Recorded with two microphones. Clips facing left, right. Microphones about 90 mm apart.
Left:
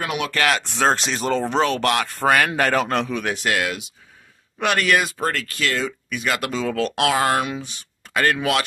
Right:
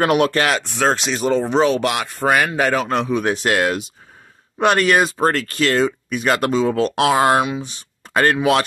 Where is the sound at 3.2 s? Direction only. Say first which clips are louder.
Right 5 dB; 35° right (ahead or behind).